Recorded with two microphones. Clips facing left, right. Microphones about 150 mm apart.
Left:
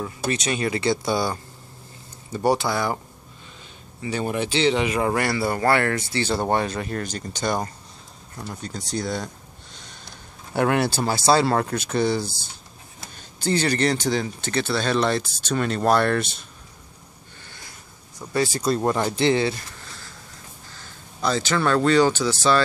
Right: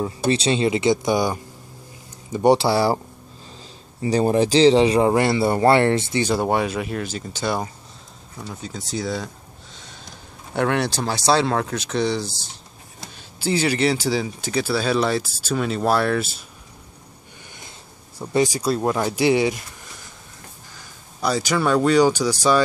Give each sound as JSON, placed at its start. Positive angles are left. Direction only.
{"t": 0.0, "sound": "speech", "side_deg": -30}
{"t": 4.0, "sound": "speech", "side_deg": -35}
{"t": 6.2, "sound": "speech", "side_deg": -10}
{"t": 10.5, "sound": "speech", "side_deg": 5}
{"t": 18.2, "sound": "speech", "side_deg": -20}